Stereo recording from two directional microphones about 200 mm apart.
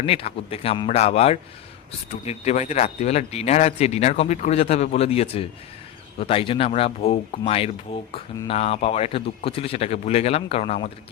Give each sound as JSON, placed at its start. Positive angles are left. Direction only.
{"t": 0.0, "sound": "speech", "side_deg": 30}